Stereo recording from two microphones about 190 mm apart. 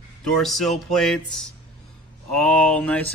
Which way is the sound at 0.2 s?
Centre (ahead or behind).